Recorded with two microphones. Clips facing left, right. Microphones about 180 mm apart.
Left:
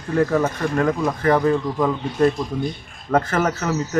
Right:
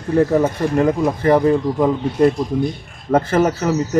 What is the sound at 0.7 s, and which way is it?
A man's voice, 20° right (ahead or behind).